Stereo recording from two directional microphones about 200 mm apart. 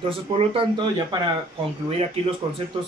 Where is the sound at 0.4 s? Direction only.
25° right (ahead or behind).